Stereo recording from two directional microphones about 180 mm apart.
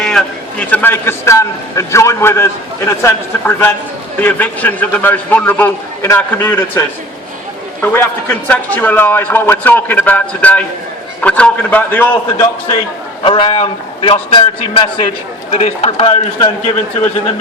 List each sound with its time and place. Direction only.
0.0 s a sound: 5° left (ahead or behind)
0.7 s a man's voice: 10° left (ahead or behind)
13.2 s a man's voice: 30° left (ahead or behind)